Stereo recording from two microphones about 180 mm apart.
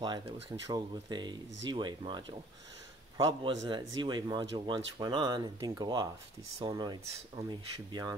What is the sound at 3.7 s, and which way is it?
Speech, 25° right (ahead or behind).